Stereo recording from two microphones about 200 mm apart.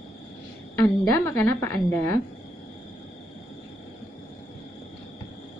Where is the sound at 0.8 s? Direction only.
10° left (ahead or behind).